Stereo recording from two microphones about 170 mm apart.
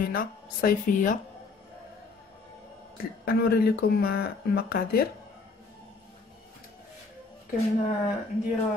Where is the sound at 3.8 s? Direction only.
65° left (ahead or behind).